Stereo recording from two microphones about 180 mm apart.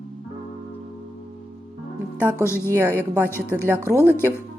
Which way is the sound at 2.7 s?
15° right (ahead or behind).